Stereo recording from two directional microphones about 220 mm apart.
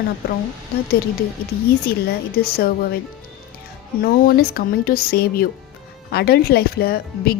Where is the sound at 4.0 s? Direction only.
40° left (ahead or behind).